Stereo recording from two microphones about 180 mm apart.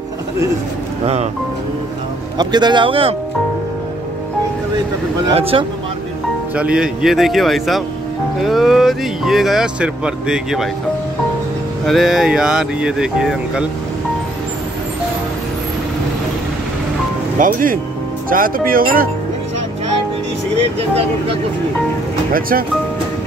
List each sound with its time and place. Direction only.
2.3 s speech: 25° right (ahead or behind)
5.3 s speech: 30° right (ahead or behind)
6.5 s speech: 5° right (ahead or behind)
11.8 s speech: centre (ahead or behind)
17.4 s speech: 50° right (ahead or behind)
22.3 s speech: 55° right (ahead or behind)